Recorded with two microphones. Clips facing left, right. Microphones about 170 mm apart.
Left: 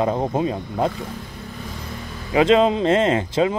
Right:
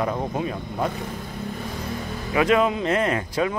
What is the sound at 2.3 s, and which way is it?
Speech, 25° left (ahead or behind).